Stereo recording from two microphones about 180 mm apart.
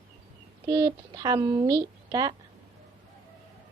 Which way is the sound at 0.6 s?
20° right (ahead or behind).